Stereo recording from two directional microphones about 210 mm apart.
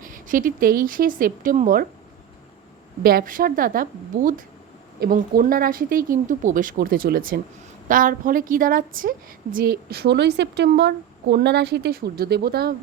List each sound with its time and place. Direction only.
0.0 s speech: 40° right (ahead or behind)
3.0 s a woman's voice: 45° right (ahead or behind)